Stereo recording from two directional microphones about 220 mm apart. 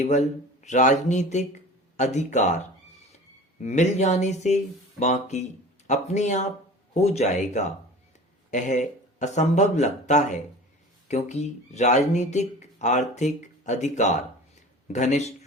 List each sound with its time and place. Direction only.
0.0 s speech: 30° left (ahead or behind)